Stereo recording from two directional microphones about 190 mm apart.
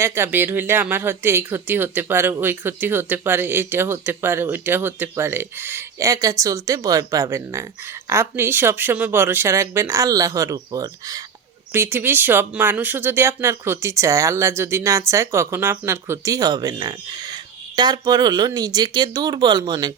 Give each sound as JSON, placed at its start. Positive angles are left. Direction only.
{"t": 0.0, "sound": "speech", "side_deg": -15}